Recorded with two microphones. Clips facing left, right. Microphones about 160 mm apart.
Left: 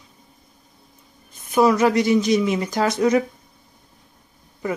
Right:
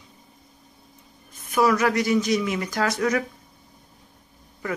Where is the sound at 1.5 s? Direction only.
25° left (ahead or behind).